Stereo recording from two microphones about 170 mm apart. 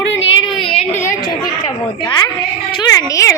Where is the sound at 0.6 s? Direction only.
35° left (ahead or behind).